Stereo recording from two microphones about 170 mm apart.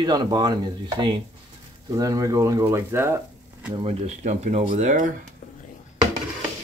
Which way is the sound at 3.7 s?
40° right (ahead or behind).